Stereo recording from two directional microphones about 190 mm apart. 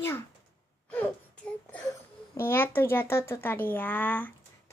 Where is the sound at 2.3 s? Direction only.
10° left (ahead or behind).